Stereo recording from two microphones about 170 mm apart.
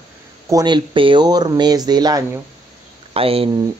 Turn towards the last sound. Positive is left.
turn(degrees=-35)  # may be behind; listen again after turning